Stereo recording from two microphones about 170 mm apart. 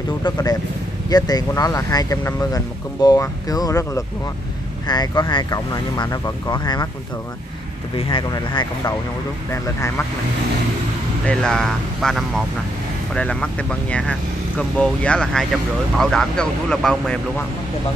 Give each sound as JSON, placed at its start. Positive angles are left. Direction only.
{"t": 0.2, "sound": "speech", "side_deg": 25}
{"t": 8.1, "sound": "speech", "side_deg": 25}
{"t": 11.2, "sound": "speech", "side_deg": 5}